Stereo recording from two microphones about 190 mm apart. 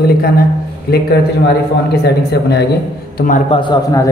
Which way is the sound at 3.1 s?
45° left (ahead or behind).